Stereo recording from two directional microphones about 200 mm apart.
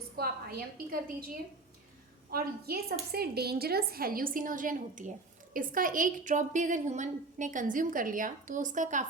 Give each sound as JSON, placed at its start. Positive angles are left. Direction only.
{"t": 0.2, "sound": "a woman's voice", "side_deg": -50}